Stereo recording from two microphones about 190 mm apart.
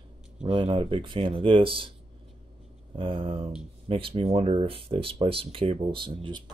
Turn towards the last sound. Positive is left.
turn(degrees=-25)  # may be behind; listen again after turning